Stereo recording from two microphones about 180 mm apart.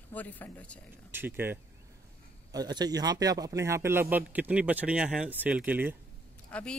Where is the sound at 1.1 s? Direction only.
10° right (ahead or behind).